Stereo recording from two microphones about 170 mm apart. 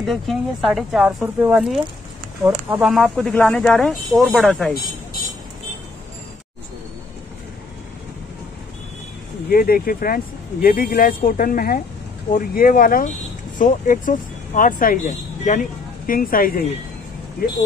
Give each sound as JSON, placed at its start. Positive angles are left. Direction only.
{"t": 0.0, "sound": "speech", "side_deg": 0}
{"t": 2.8, "sound": "speech", "side_deg": 0}
{"t": 9.5, "sound": "speech", "side_deg": 60}